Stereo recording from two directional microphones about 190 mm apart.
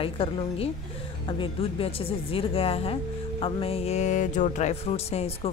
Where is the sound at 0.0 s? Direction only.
30° left (ahead or behind).